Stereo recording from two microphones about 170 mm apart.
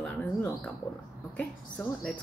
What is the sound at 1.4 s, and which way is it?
Speech, 10° left (ahead or behind).